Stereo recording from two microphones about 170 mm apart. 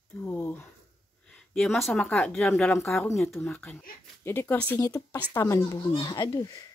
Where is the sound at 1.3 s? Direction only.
Centre (ahead or behind).